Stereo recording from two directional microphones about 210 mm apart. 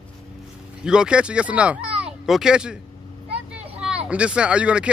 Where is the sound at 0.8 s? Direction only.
5° right (ahead or behind).